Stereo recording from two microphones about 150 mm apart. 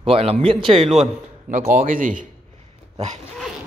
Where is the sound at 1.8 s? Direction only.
65° right (ahead or behind).